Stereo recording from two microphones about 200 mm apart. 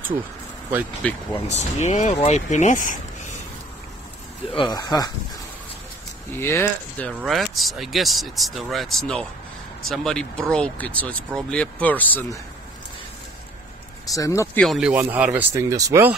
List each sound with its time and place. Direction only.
1.0 s speech: 5° left (ahead or behind)
1.5 s speech: 35° left (ahead or behind)
4.6 s speech: 20° left (ahead or behind)
6.3 s speech: 10° left (ahead or behind)
14.1 s speech: 15° left (ahead or behind)
14.6 s speech: centre (ahead or behind)